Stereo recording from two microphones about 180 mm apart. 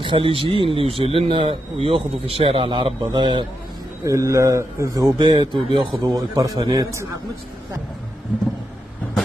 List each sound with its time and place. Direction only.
0.0 s a man's voice: 30° right (ahead or behind)